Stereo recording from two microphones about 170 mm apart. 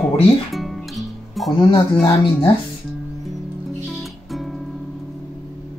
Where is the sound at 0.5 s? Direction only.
Centre (ahead or behind).